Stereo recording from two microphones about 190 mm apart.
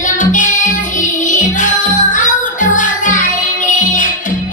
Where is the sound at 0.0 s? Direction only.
40° left (ahead or behind).